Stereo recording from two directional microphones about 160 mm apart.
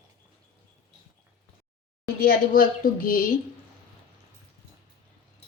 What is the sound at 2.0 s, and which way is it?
Speech, 65° left (ahead or behind).